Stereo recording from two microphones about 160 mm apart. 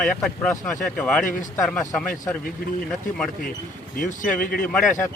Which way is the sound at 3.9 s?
55° left (ahead or behind).